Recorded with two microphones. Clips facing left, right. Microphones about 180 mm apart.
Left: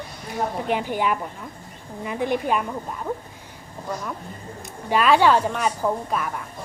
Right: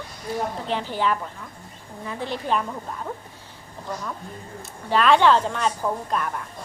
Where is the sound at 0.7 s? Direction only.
15° left (ahead or behind).